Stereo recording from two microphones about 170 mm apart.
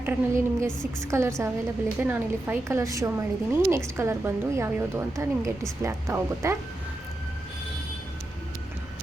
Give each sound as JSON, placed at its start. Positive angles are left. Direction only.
{"t": 0.0, "sound": "a woman's voice", "side_deg": -15}